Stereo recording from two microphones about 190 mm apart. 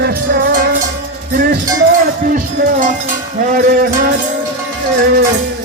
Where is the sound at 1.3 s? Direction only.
50° right (ahead or behind).